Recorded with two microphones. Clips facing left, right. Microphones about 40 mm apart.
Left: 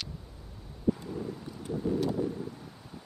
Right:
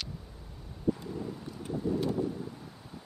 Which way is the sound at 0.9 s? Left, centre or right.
Centre.